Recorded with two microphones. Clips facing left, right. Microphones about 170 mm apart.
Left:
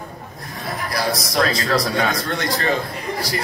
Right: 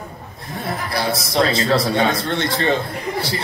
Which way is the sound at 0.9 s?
25° right (ahead or behind).